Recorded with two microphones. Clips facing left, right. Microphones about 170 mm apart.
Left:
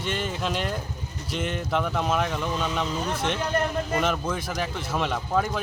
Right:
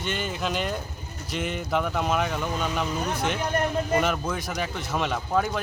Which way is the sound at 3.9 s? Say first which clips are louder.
Left 1 dB; centre (ahead or behind).